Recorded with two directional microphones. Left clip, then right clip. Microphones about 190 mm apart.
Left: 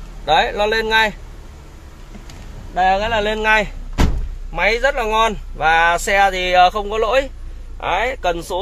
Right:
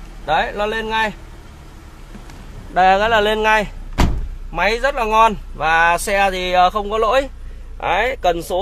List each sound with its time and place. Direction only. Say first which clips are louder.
0.2 s a man's voice: left 3 dB; 10° left (ahead or behind)
2.7 s speech: right 3 dB; 35° right (ahead or behind)
3.4 s speech: even; 5° right (ahead or behind)